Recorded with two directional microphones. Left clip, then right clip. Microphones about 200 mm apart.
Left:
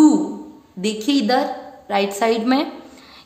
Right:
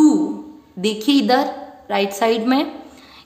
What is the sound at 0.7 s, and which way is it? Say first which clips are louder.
Speech: right 3 dB; 15° right (ahead or behind).